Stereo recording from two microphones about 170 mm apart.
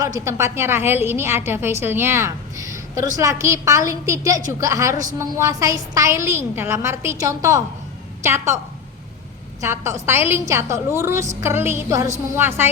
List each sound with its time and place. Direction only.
0.0 s a woman's voice: 20° right (ahead or behind)
9.6 s a woman's voice: 15° right (ahead or behind)